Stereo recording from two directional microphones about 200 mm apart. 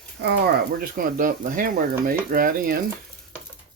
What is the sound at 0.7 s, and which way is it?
Speech, 45° right (ahead or behind).